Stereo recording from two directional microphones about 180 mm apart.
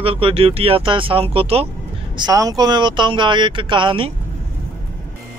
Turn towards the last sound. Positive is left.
turn(degrees=-30)  # may be behind; listen again after turning